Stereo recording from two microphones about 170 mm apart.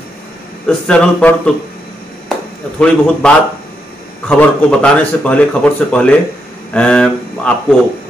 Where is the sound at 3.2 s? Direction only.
5° left (ahead or behind).